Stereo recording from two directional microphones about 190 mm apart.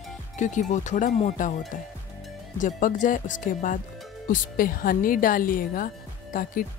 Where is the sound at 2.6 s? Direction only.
40° left (ahead or behind).